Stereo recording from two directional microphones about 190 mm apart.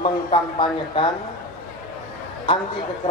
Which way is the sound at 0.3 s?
25° left (ahead or behind).